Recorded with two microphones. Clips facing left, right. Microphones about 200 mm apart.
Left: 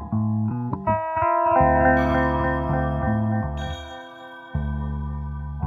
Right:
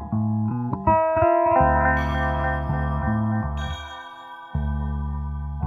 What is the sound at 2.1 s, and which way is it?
Music, 90° left.